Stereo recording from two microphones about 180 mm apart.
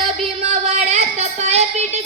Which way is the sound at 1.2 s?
40° right (ahead or behind).